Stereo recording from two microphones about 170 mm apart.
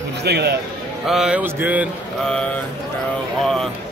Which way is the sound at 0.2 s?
75° right (ahead or behind).